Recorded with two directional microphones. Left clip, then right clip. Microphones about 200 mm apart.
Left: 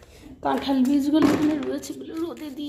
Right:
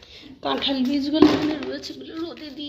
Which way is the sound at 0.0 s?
15° left (ahead or behind).